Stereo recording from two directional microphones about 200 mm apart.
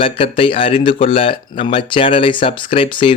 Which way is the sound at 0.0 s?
25° left (ahead or behind).